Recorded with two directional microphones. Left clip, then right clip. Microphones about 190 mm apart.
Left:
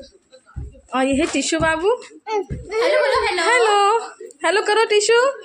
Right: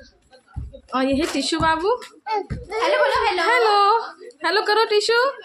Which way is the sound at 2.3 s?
20° left (ahead or behind).